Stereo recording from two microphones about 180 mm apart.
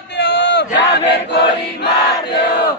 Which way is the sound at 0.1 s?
70° left (ahead or behind).